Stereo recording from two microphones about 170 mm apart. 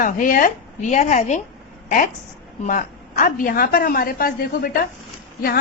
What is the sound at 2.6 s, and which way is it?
A woman's voice, 50° left (ahead or behind).